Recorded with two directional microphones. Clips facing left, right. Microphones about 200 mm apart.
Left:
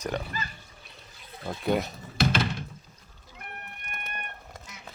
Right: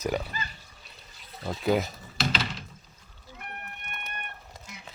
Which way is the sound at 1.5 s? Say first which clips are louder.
Right 1 dB; centre (ahead or behind).